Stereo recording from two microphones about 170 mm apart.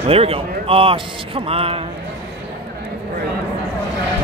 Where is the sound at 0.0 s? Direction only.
35° right (ahead or behind).